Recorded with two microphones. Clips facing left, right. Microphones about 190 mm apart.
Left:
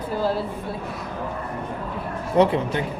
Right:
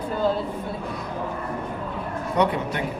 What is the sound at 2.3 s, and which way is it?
Speech, 30° left (ahead or behind).